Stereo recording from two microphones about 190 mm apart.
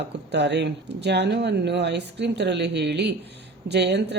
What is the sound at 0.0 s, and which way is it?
Speech, 65° right (ahead or behind).